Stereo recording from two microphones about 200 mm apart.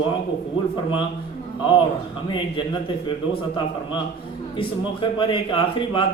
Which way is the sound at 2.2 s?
25° left (ahead or behind).